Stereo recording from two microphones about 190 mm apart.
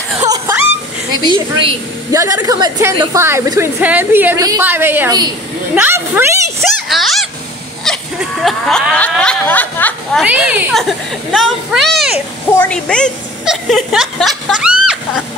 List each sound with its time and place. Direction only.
1.5 s a woman's voice: 25° right (ahead or behind)
2.1 s a woman's voice: 15° right (ahead or behind)
6.6 s a sound: centre (ahead or behind)
7.8 s speech: centre (ahead or behind)
10.2 s a child's voice: 5° right (ahead or behind)